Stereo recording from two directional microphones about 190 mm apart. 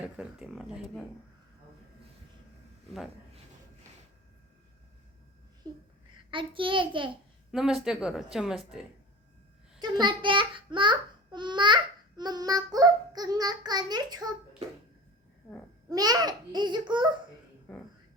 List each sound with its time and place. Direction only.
0.0 s a woman's voice: 5° right (ahead or behind)
5.6 s a child's voice: 20° right (ahead or behind)
7.5 s a woman's voice: 5° right (ahead or behind)
9.8 s a child's voice: 25° right (ahead or behind)
15.9 s a child's voice: 20° right (ahead or behind)
17.7 s a woman's voice: 5° left (ahead or behind)